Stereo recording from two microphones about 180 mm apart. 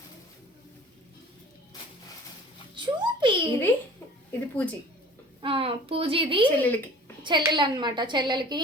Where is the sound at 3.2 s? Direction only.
25° right (ahead or behind).